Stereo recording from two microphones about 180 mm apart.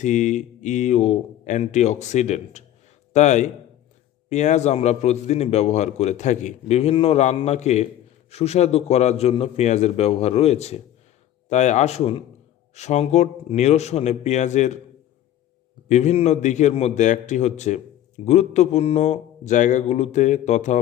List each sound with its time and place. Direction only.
0.0 s a man's voice: 40° left (ahead or behind)
15.9 s a man's voice: 40° left (ahead or behind)